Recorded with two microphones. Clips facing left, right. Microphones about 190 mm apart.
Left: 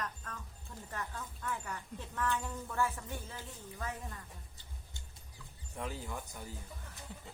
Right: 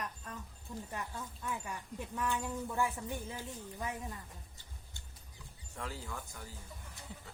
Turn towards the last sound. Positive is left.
turn(degrees=20)  # may be behind; listen again after turning